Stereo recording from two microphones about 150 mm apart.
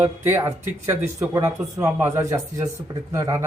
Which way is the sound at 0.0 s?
15° right (ahead or behind).